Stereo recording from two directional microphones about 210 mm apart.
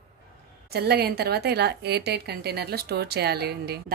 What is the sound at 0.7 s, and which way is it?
A woman's voice, 50° right (ahead or behind).